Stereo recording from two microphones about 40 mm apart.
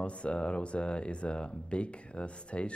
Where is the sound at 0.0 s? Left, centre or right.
Left.